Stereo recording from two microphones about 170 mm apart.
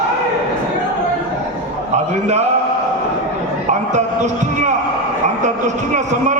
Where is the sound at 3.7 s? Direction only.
45° right (ahead or behind).